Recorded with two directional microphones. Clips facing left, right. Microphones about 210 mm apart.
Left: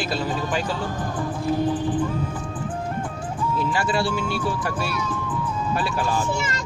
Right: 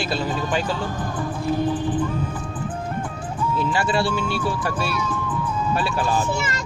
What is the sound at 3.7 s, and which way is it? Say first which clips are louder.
Speech: right 2 dB; 25° right (ahead or behind).